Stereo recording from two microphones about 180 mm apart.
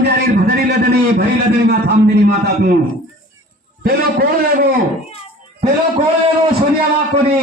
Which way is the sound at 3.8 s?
60° right (ahead or behind).